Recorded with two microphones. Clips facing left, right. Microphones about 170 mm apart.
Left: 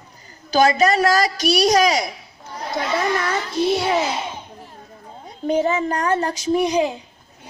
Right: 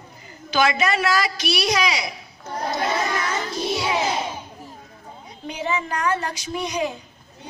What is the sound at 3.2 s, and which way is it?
Music, 55° left (ahead or behind).